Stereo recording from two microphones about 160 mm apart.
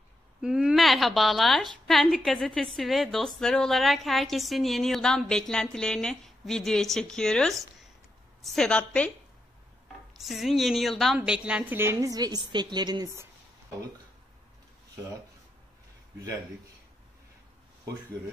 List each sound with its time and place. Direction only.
0.4 s a woman's voice: 5° right (ahead or behind)
10.2 s a woman's voice: centre (ahead or behind)
11.4 s a woman's voice: 10° right (ahead or behind)